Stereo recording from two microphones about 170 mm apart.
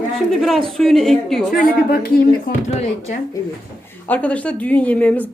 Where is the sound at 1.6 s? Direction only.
60° left (ahead or behind).